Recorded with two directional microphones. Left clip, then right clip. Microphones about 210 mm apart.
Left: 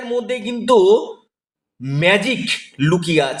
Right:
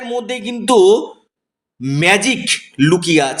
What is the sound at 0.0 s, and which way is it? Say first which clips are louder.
A man's voice: even; 35° right (ahead or behind).